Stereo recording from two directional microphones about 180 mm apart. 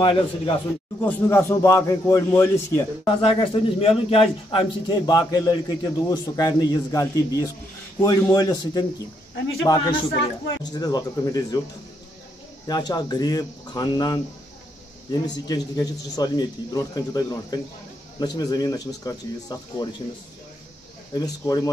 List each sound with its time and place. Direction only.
0.0 s a man's voice: 30° left (ahead or behind)
1.0 s a man's voice: 15° left (ahead or behind)
3.1 s a man's voice: 30° left (ahead or behind)
12.6 s a man's voice: 25° left (ahead or behind)
21.1 s a man's voice: 20° left (ahead or behind)